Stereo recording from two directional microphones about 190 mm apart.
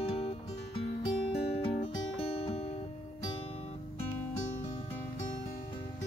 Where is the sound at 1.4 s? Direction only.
30° left (ahead or behind).